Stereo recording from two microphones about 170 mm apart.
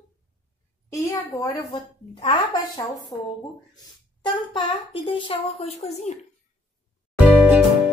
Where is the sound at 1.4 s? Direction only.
30° left (ahead or behind).